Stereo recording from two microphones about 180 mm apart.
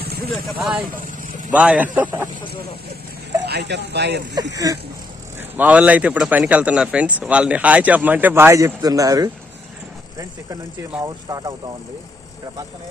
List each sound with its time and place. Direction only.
0.6 s speech: 10° right (ahead or behind)
3.4 s speech: 70° right (ahead or behind)
4.5 s speech: 20° right (ahead or behind)
5.4 s speech: 10° right (ahead or behind)
11.3 s speech: 20° right (ahead or behind)